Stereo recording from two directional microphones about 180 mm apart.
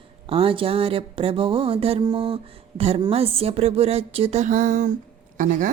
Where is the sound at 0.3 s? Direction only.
30° right (ahead or behind).